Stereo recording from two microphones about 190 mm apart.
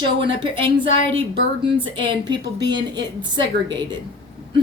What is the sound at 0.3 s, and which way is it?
Speech, 25° right (ahead or behind).